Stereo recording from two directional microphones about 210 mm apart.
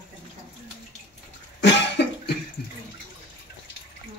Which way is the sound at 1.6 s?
55° left (ahead or behind).